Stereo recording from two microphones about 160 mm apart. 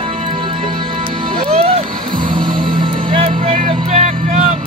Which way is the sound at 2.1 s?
60° right (ahead or behind).